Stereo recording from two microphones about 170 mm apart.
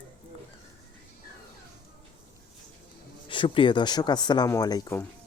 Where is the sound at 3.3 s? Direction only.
30° left (ahead or behind).